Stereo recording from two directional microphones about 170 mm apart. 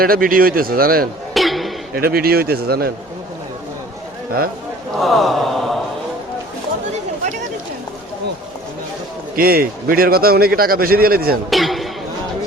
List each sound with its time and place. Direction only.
0.0 s a man's voice: 60° right (ahead or behind)
1.3 s a sound: centre (ahead or behind)
2.0 s a man's voice: 65° right (ahead or behind)
4.9 s sigh: centre (ahead or behind)
9.3 s a man's voice: 60° right (ahead or behind)
11.5 s a sound: centre (ahead or behind)